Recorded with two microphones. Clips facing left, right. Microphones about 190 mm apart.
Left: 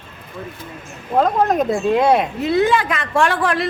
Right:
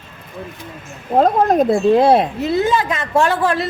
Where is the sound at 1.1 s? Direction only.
35° right (ahead or behind).